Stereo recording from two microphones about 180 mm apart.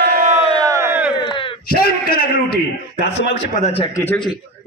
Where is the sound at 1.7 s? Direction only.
55° left (ahead or behind).